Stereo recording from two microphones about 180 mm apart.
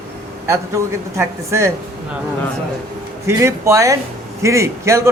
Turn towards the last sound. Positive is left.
turn(degrees=-15)  # may be behind; listen again after turning